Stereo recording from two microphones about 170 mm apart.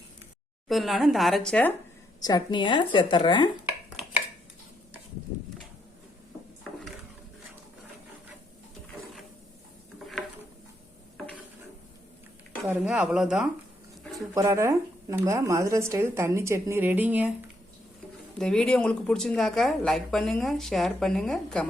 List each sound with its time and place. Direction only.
0.7 s speech: centre (ahead or behind)
2.2 s speech: 25° left (ahead or behind)
12.6 s speech: 5° right (ahead or behind)
14.3 s speech: 15° right (ahead or behind)
18.3 s speech: 5° left (ahead or behind)